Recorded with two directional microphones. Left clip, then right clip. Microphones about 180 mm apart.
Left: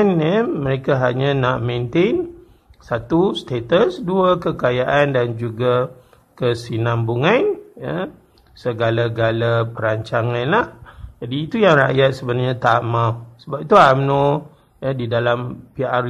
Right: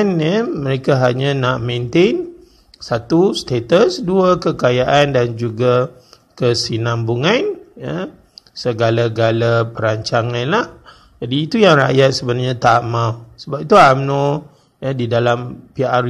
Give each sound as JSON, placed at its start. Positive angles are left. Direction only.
{"t": 0.2, "sound": "a man's voice", "side_deg": -20}
{"t": 13.9, "sound": "speech", "side_deg": 0}
{"t": 14.8, "sound": "a man's voice", "side_deg": -25}